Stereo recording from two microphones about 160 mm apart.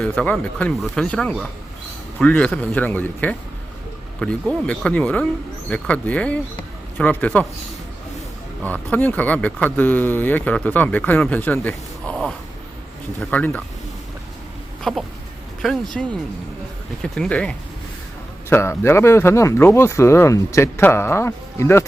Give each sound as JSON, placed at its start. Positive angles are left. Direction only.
{"t": 0.0, "sound": "speech", "side_deg": 10}
{"t": 8.6, "sound": "speech", "side_deg": 10}
{"t": 13.3, "sound": "speech", "side_deg": 10}
{"t": 14.9, "sound": "speech", "side_deg": 0}
{"t": 17.0, "sound": "speech", "side_deg": 5}